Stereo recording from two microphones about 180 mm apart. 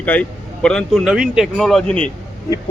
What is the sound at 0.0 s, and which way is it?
Speech, 10° left (ahead or behind).